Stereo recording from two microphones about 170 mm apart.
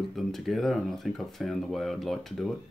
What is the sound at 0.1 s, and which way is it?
Speech, centre (ahead or behind).